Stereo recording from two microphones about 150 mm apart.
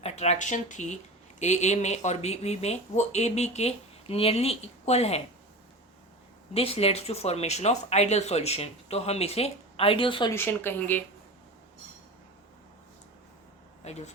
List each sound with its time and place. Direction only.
0.0 s speech: 45° left (ahead or behind)
6.5 s speech: 40° left (ahead or behind)
10.3 s speech: 15° left (ahead or behind)
13.8 s speech: 50° left (ahead or behind)